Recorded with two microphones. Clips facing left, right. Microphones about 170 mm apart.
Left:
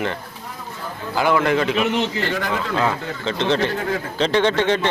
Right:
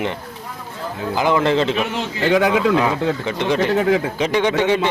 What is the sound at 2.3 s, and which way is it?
Speech, 85° right.